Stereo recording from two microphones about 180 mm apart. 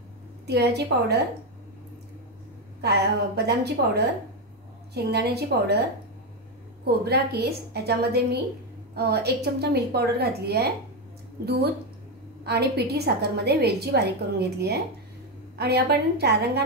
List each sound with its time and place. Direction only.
0.5 s a woman's voice: 65° right (ahead or behind)
2.8 s a woman's voice: 65° right (ahead or behind)
6.8 s a woman's voice: 60° right (ahead or behind)